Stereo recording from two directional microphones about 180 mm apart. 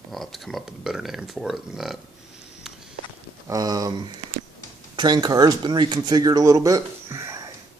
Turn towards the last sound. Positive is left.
turn(degrees=-20)  # may be behind; listen again after turning